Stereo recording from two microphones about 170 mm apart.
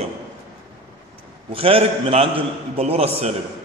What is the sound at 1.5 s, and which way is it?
A man's voice, 35° right (ahead or behind).